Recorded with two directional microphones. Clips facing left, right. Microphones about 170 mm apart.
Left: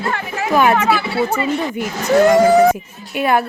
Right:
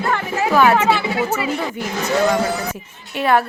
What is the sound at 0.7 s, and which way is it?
Speech, 25° right (ahead or behind).